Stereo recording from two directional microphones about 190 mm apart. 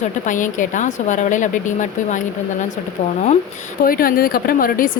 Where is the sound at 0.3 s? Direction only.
45° left (ahead or behind).